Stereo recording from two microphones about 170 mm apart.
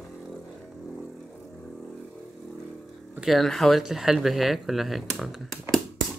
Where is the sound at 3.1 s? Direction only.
Centre (ahead or behind).